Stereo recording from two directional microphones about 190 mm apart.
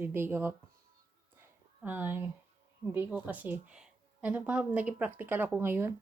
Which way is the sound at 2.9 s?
10° right (ahead or behind).